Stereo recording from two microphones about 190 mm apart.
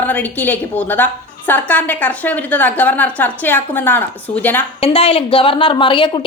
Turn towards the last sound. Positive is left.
turn(degrees=25)  # may be behind; listen again after turning